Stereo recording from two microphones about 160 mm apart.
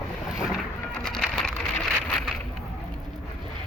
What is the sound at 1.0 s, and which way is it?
Splinter, 5° left (ahead or behind).